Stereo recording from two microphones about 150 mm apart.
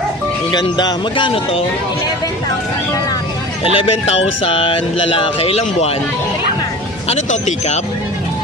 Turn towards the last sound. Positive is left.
turn(degrees=50)  # may be behind; listen again after turning